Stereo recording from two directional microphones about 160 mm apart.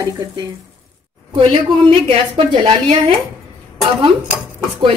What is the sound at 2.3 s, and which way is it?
Speech, 35° right (ahead or behind).